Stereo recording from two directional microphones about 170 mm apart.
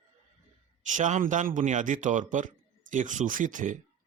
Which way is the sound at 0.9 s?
45° right (ahead or behind).